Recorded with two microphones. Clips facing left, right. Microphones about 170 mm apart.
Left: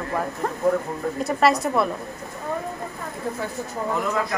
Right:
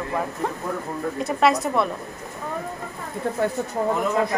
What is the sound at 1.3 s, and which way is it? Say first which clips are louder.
Speech: even; centre (ahead or behind).